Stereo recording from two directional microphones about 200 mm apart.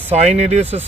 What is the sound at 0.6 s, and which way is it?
Speech, 10° right (ahead or behind).